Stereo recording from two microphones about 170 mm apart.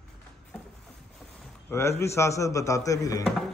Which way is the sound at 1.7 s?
15° left (ahead or behind).